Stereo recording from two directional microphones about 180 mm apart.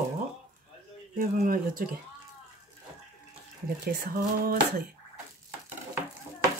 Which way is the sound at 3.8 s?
60° right (ahead or behind).